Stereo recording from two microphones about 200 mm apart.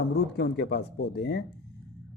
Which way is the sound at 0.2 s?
55° left (ahead or behind).